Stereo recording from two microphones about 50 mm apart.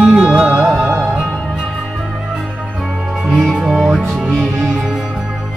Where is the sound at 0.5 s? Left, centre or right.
Right.